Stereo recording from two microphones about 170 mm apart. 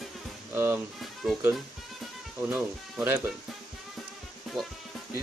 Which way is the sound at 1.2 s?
Centre (ahead or behind).